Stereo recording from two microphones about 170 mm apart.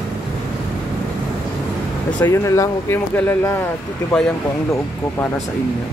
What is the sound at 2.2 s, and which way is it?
Speech, 15° left (ahead or behind).